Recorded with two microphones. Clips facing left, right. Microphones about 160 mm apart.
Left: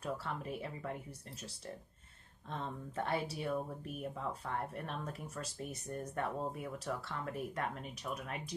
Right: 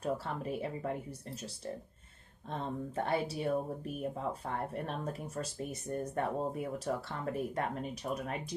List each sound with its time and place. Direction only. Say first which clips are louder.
0.0 s speech: right 5 dB; 30° right (ahead or behind)
2.5 s speech: right 5 dB; 30° right (ahead or behind)